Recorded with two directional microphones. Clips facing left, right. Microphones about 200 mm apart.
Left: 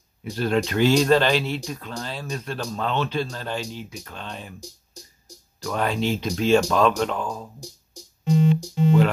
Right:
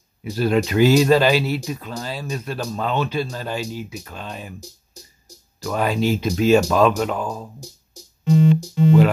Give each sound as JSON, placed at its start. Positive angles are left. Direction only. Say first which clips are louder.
{"t": 0.2, "sound": "speech", "louder": "right 3 dB", "side_deg": -5}
{"t": 8.2, "sound": "keyboard", "louder": "right 4 dB", "side_deg": -65}